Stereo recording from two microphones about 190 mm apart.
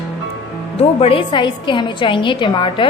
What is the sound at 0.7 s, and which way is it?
A woman's voice, 30° left (ahead or behind).